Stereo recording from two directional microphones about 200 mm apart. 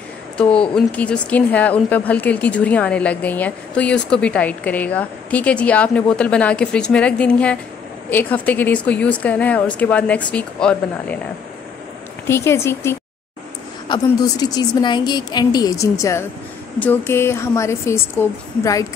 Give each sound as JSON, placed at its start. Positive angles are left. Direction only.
{"t": 0.4, "sound": "speech", "side_deg": 5}
{"t": 12.3, "sound": "a woman's voice", "side_deg": 15}